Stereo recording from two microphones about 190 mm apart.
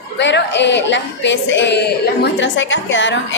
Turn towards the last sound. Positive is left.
turn(degrees=75)  # may be behind; listen again after turning